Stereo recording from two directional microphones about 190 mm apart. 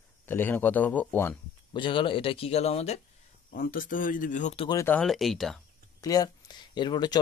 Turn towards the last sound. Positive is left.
turn(degrees=25)  # may be behind; listen again after turning